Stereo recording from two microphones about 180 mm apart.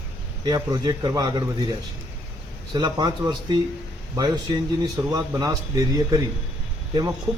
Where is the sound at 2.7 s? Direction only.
25° right (ahead or behind).